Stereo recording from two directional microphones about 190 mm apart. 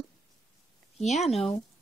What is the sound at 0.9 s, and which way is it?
Speech, 35° left (ahead or behind).